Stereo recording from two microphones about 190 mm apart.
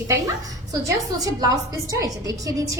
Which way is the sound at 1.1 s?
20° right (ahead or behind).